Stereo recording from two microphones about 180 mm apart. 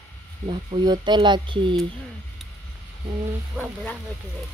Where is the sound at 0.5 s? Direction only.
25° right (ahead or behind).